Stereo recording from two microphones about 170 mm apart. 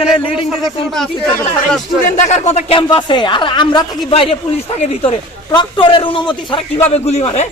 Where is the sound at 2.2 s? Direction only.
45° left (ahead or behind).